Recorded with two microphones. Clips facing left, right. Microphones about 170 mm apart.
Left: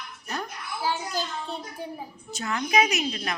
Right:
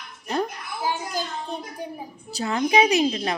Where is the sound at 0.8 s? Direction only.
15° right (ahead or behind).